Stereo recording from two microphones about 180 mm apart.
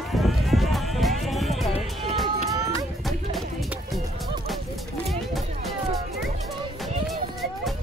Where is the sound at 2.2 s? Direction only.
20° right (ahead or behind).